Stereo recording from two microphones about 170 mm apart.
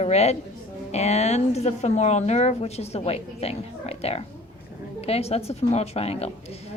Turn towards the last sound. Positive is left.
turn(degrees=35)  # may be behind; listen again after turning